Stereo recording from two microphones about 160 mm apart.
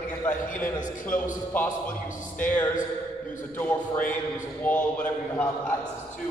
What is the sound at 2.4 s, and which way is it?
Speech, 10° left (ahead or behind).